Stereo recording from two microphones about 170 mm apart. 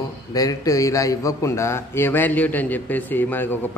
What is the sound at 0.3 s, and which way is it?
A man's voice, 20° left (ahead or behind).